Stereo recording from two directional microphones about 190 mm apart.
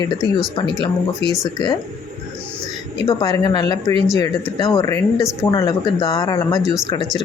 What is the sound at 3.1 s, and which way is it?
Speech, 20° left (ahead or behind).